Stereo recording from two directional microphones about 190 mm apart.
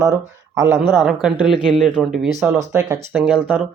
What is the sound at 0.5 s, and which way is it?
Speech, 15° right (ahead or behind).